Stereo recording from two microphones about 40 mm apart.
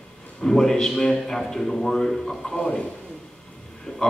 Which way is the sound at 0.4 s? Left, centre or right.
Centre.